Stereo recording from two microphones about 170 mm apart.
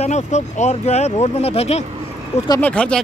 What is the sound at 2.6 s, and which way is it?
Speech, 5° left (ahead or behind).